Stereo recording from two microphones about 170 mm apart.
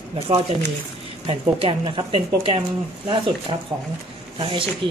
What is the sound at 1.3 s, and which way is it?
Speech, 30° right (ahead or behind).